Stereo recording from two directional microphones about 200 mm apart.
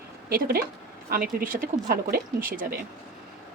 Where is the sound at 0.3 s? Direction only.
50° right (ahead or behind).